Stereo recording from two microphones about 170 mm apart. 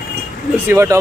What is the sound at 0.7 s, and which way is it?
Speech, 15° right (ahead or behind).